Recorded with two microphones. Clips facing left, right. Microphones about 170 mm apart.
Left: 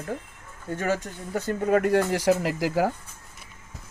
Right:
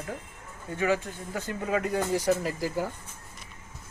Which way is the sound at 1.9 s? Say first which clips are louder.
Left 4 dB; 85° left.